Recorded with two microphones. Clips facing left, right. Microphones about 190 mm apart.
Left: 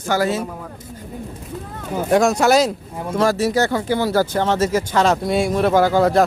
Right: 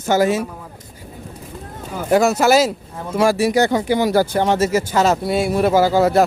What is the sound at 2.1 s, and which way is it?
Speech, centre (ahead or behind).